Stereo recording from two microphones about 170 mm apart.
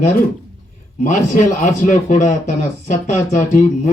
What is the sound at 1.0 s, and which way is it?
A man's voice, 45° left (ahead or behind).